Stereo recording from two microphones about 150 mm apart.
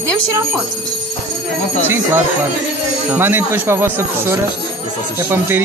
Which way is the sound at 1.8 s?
15° right (ahead or behind).